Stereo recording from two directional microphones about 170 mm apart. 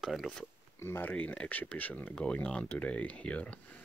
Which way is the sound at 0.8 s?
15° left (ahead or behind).